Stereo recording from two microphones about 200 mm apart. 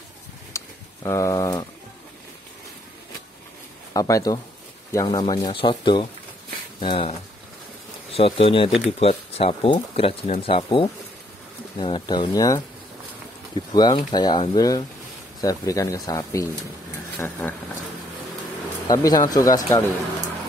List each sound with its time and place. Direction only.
0.5 s a sound: 15° left (ahead or behind)
3.9 s speech: 15° left (ahead or behind)
13.7 s speech: 20° left (ahead or behind)
18.9 s speech: 20° left (ahead or behind)